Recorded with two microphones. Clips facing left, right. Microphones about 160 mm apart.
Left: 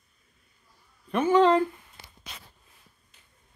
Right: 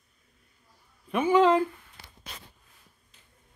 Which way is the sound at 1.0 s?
5° right (ahead or behind).